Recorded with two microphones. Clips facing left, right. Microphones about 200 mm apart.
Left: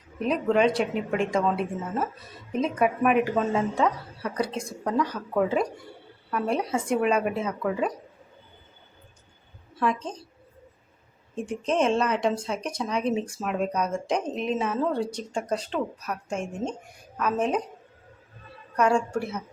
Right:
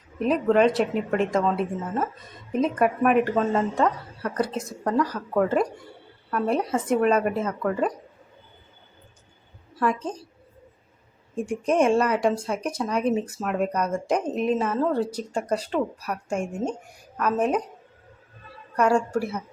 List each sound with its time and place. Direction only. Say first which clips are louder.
0.2 s a woman's voice: right 3 dB; centre (ahead or behind)
9.8 s speech: right 2 dB; 10° right (ahead or behind)
11.4 s speech: right 3 dB; 10° right (ahead or behind)
18.8 s speech: right 2 dB; 5° right (ahead or behind)